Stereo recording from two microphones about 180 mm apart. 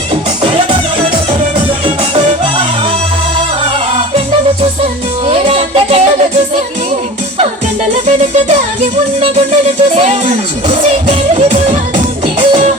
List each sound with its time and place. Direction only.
2.1 s music: 30° right (ahead or behind)
5.2 s music: 35° right (ahead or behind)
9.2 s music: 35° right (ahead or behind)